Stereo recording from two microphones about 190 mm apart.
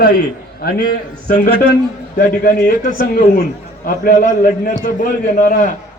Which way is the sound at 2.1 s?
55° left (ahead or behind).